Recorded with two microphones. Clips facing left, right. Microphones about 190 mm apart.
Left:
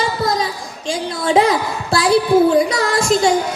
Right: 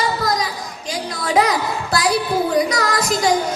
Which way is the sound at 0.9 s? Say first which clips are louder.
Left 5 dB; 25° left (ahead or behind).